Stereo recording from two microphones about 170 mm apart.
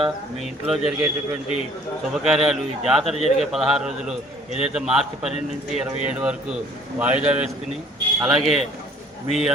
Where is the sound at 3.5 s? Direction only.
5° right (ahead or behind).